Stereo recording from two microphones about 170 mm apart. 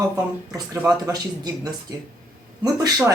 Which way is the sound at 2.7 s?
15° right (ahead or behind).